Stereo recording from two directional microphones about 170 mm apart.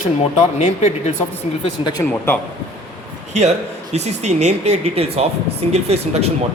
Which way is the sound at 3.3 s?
45° right (ahead or behind).